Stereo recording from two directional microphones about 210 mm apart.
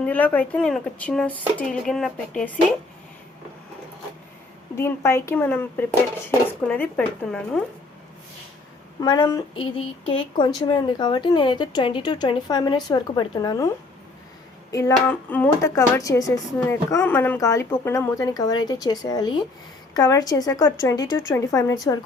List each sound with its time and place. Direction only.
0.0 s speech: 5° left (ahead or behind)
4.7 s speech: 10° left (ahead or behind)
9.0 s a woman's voice: 20° left (ahead or behind)
14.7 s speech: 15° left (ahead or behind)